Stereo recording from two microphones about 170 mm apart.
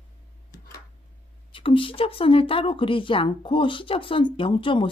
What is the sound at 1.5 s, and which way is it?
A woman's voice, 30° left (ahead or behind).